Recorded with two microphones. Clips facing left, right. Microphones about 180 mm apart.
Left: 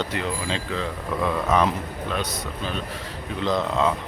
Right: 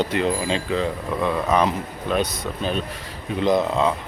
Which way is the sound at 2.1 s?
15° right (ahead or behind).